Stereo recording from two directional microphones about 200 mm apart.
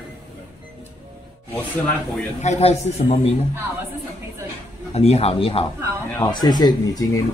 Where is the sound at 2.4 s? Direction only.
35° left (ahead or behind).